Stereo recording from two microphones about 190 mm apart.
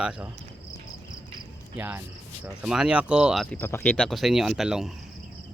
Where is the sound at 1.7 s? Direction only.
10° right (ahead or behind).